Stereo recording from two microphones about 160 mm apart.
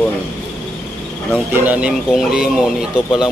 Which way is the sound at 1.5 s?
10° right (ahead or behind).